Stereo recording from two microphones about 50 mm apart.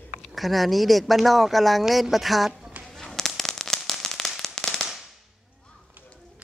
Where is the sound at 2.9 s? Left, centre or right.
Centre.